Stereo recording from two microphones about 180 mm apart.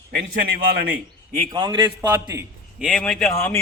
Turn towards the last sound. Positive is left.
turn(degrees=0)  # may be behind; listen again after turning